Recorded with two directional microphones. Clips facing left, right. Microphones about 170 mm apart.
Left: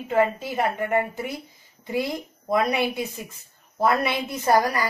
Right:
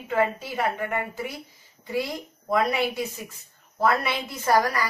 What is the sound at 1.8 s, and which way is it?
A woman's voice, 20° left (ahead or behind).